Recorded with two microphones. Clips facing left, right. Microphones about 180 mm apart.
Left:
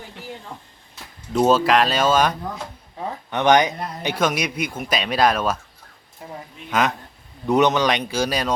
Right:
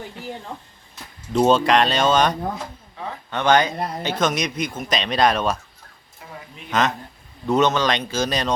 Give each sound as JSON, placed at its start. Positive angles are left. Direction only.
{"t": 1.3, "sound": "speech", "side_deg": 5}
{"t": 3.2, "sound": "speech", "side_deg": 15}
{"t": 6.7, "sound": "a man's voice", "side_deg": 10}